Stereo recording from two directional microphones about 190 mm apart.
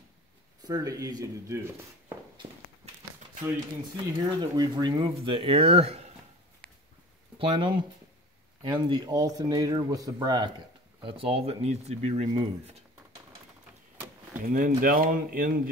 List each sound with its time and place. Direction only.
0.7 s speech: 20° right (ahead or behind)
3.9 s speech: 20° right (ahead or behind)
7.3 s speech: 25° right (ahead or behind)
14.5 s speech: 45° right (ahead or behind)